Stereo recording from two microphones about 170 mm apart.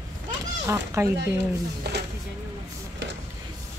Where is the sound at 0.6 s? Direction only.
15° right (ahead or behind).